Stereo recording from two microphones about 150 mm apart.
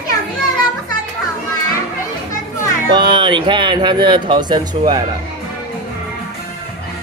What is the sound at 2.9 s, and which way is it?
Speech, 30° right (ahead or behind).